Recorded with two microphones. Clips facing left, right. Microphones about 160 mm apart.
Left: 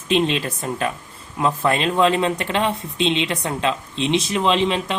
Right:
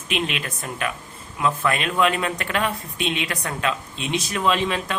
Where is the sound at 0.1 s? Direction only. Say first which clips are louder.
Left 7 dB; 30° left (ahead or behind).